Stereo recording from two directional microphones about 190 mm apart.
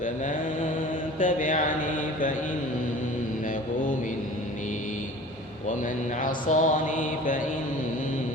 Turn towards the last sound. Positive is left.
turn(degrees=45)  # may be behind; listen again after turning